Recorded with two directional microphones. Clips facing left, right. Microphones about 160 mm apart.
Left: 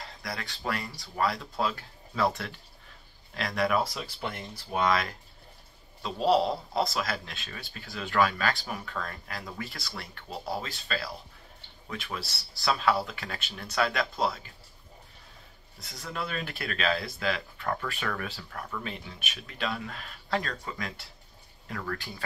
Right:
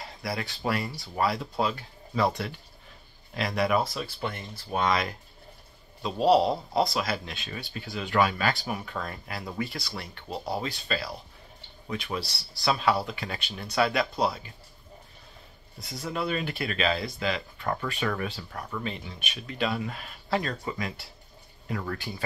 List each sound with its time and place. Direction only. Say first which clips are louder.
0.0 s a sound: right 5 dB; 10° right (ahead or behind)
0.7 s speech: right 4 dB; 10° right (ahead or behind)
3.9 s speech: right 3 dB; 10° left (ahead or behind)
15.8 s speech: right 5 dB; 5° right (ahead or behind)
18.9 s speech: right 3 dB; 5° left (ahead or behind)
20.4 s speech: right 4 dB; 20° right (ahead or behind)